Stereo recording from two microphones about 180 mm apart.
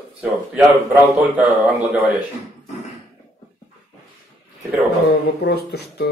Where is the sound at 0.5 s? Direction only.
10° right (ahead or behind).